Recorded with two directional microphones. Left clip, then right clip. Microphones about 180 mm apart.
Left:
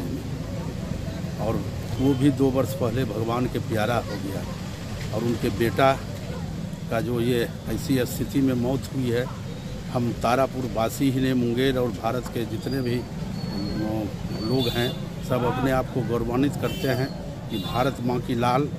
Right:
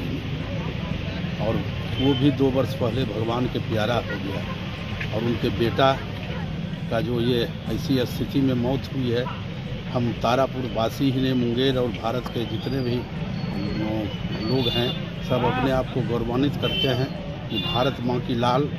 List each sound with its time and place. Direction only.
2.2 s speech: 20° left (ahead or behind)
5.6 s speech: 20° left (ahead or behind)
14.7 s speech: 20° left (ahead or behind)